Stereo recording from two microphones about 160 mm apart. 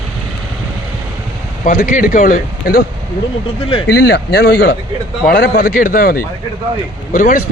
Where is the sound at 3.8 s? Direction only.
90° left.